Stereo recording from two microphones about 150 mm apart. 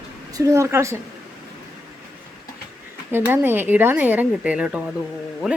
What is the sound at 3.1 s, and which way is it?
Speech, 15° right (ahead or behind).